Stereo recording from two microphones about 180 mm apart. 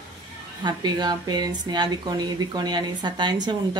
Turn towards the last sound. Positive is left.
turn(degrees=-25)  # may be behind; listen again after turning